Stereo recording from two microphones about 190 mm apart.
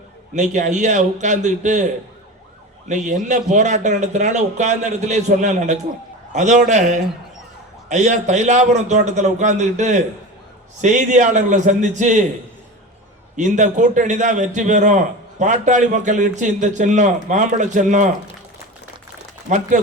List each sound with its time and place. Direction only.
0.3 s a man's voice: 40° right (ahead or behind)
2.9 s a man's voice: 40° right (ahead or behind)
13.3 s a man's voice: 40° right (ahead or behind)